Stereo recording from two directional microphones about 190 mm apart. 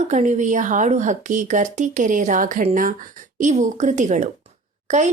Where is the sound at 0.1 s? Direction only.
40° right (ahead or behind).